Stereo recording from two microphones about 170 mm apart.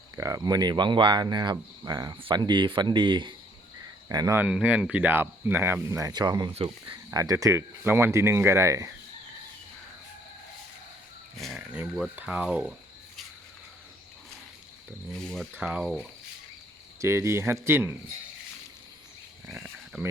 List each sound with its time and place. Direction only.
0.2 s speech: 20° right (ahead or behind)
4.4 s speech: 5° right (ahead or behind); by 6.5 s 25° right (ahead or behind)
6.5 s speech: 35° right (ahead or behind)
7.1 s speech: 20° right (ahead or behind)
11.3 s speech: centre (ahead or behind)
15.1 s speech: 5° left (ahead or behind)
17.0 s speech: 15° right (ahead or behind)